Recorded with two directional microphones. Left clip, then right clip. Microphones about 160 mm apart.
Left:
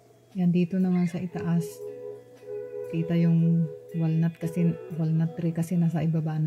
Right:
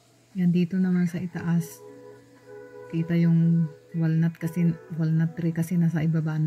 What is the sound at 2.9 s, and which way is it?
Speech, centre (ahead or behind).